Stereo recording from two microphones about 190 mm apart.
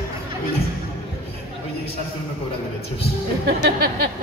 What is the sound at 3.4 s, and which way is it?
Music, 55° right (ahead or behind).